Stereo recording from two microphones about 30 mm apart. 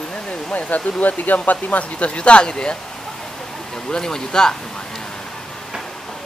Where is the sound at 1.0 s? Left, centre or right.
Left.